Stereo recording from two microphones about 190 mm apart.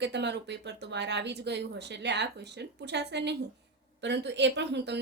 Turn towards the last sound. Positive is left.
turn(degrees=-65)  # may be behind; listen again after turning